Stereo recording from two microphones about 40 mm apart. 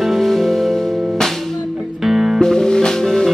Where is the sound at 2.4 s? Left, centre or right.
Centre.